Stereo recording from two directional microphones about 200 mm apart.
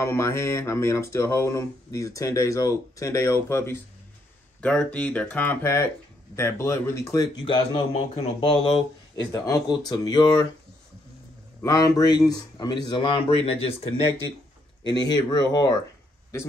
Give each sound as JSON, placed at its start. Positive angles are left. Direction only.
{"t": 0.0, "sound": "speech", "side_deg": 15}
{"t": 11.6, "sound": "speech", "side_deg": 20}